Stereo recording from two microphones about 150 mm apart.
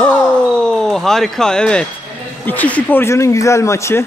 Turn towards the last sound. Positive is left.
turn(degrees=20)  # may be behind; listen again after turning